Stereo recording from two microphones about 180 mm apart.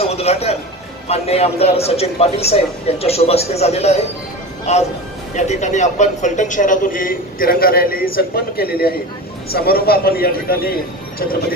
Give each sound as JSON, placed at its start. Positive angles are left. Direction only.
{"t": 0.0, "sound": "a man's voice", "side_deg": 35}